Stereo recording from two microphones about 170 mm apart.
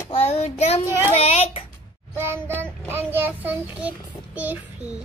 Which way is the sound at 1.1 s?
35° left (ahead or behind).